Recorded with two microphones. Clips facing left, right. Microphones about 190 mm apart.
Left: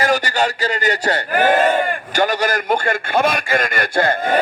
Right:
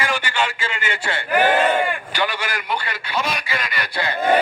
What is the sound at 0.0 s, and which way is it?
Speech, 40° left (ahead or behind).